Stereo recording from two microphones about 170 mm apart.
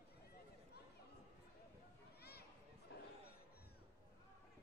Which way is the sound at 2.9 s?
70° left (ahead or behind).